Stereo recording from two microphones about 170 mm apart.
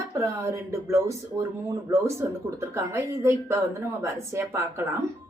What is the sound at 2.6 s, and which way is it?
Speech, 15° right (ahead or behind).